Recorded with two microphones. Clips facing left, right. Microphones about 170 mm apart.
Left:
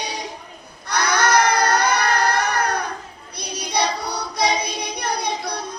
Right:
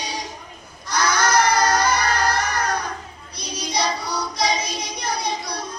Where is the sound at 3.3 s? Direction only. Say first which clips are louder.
Left 2 dB; 60° left (ahead or behind).